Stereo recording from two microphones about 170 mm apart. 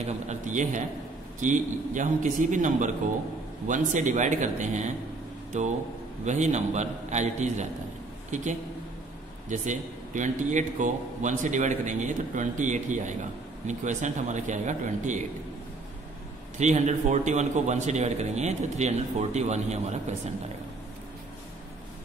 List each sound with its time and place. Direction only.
0.0 s speech: 45° right (ahead or behind)
9.5 s speech: 45° right (ahead or behind)
16.5 s speech: 45° right (ahead or behind)